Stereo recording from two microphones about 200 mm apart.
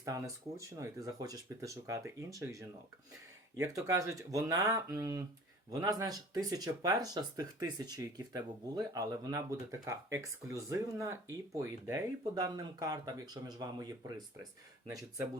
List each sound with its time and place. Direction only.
0.0 s speech: 15° right (ahead or behind)